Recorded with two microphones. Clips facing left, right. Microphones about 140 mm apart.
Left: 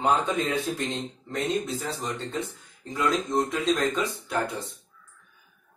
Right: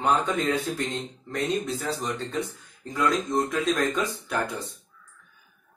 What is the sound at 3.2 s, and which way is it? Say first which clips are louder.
Speech: even; 25° left (ahead or behind).